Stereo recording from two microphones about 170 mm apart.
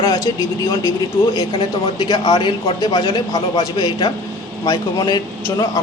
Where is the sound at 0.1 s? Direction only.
20° left (ahead or behind).